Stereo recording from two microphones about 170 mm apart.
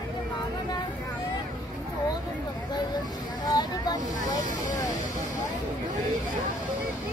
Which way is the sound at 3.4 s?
25° left (ahead or behind).